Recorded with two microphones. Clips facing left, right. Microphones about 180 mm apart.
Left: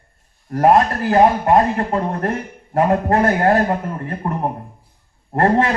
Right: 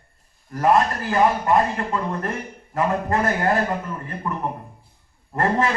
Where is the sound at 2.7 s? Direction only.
60° left (ahead or behind).